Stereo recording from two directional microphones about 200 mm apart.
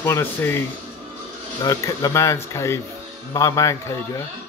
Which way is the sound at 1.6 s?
15° left (ahead or behind).